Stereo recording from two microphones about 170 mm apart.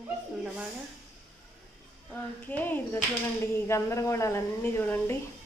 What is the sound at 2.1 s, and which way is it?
A woman's voice, 10° left (ahead or behind).